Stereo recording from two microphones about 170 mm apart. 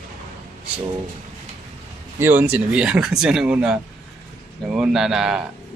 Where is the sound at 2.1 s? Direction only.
10° right (ahead or behind).